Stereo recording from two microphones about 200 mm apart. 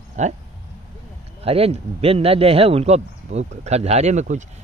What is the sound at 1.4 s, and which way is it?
Speech, 30° right (ahead or behind).